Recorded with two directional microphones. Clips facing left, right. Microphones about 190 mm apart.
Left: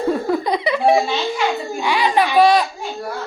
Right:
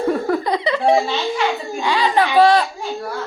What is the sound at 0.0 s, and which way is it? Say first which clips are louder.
Giggle: even; 15° left (ahead or behind).